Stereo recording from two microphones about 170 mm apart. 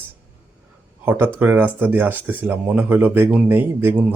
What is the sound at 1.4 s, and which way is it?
Speech, 10° right (ahead or behind).